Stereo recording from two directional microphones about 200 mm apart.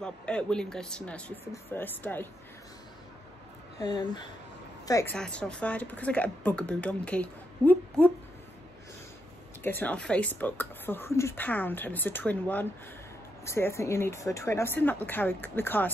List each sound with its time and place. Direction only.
0.0 s speech: 5° left (ahead or behind)
3.8 s a woman's voice: 20° left (ahead or behind)
5.1 s speech: 5° left (ahead or behind)
9.6 s speech: 10° left (ahead or behind)